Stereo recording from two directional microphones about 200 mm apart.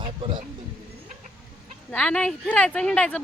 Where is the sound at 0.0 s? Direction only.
25° right (ahead or behind).